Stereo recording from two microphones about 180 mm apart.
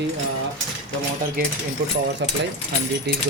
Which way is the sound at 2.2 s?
75° right (ahead or behind).